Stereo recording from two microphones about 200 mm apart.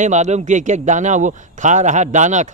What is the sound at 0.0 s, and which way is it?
A man's voice, 35° right (ahead or behind).